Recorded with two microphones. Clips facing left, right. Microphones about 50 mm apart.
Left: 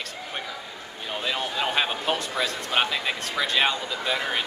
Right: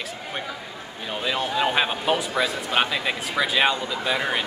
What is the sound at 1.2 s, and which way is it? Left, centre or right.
Speech, centre.